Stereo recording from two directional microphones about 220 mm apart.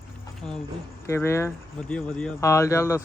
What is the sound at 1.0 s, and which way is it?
Speech, 10° left (ahead or behind).